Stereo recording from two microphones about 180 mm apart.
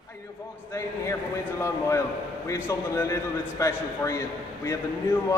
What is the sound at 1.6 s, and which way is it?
A man's voice, 15° left (ahead or behind).